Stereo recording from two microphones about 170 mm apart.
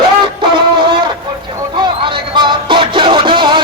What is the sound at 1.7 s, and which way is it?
Music, 30° right (ahead or behind).